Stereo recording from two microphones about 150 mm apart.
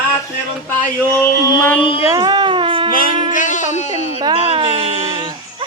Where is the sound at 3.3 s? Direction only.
60° left (ahead or behind).